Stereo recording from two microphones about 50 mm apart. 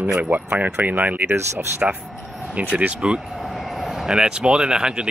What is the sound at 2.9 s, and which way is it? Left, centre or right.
Speech, centre.